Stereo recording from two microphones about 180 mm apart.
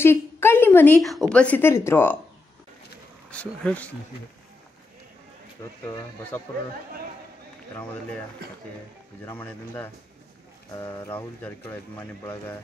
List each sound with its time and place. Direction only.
0.0 s a woman's voice: 15° left (ahead or behind)
3.3 s speech: 5° left (ahead or behind)
5.6 s speech: 15° left (ahead or behind)
9.2 s speech: 10° left (ahead or behind)